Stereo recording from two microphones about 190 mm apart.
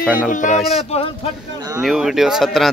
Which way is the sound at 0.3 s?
40° left (ahead or behind).